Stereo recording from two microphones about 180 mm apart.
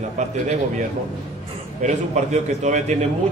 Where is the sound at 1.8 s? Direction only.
40° right (ahead or behind).